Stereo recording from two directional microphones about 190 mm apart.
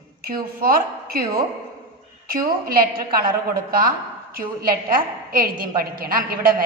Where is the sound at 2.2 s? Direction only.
50° right (ahead or behind).